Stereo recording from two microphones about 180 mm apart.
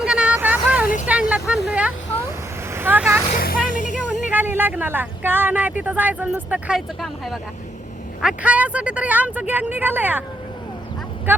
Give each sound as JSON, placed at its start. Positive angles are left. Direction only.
{"t": 0.0, "sound": "vehicle", "side_deg": -5}
{"t": 1.0, "sound": "a sound", "side_deg": -10}
{"t": 2.7, "sound": "vehicle", "side_deg": -10}
{"t": 3.3, "sound": "music", "side_deg": 55}
{"t": 4.3, "sound": "speech", "side_deg": -10}